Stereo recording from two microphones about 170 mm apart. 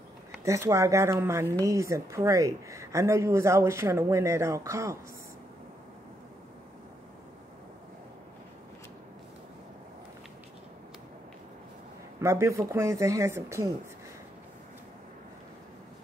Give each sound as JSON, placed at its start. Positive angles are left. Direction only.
{"t": 0.5, "sound": "speech", "side_deg": -15}
{"t": 12.2, "sound": "speech", "side_deg": -15}